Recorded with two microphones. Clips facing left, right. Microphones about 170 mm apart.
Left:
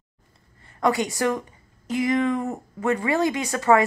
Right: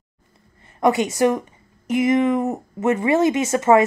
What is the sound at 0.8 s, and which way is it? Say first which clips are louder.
A woman's voice: right 5 dB; 20° right (ahead or behind).